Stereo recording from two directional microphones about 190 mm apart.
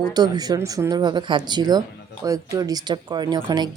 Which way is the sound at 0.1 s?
20° right (ahead or behind).